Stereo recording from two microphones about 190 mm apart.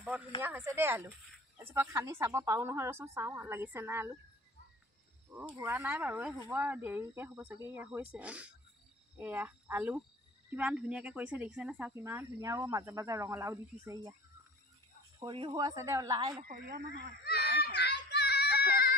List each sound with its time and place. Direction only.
0.4 s speech: 15° right (ahead or behind)
5.3 s speech: 10° right (ahead or behind)
15.1 s speech: 25° right (ahead or behind)
16.4 s speech: 55° right (ahead or behind)
17.2 s a sound: 55° left (ahead or behind)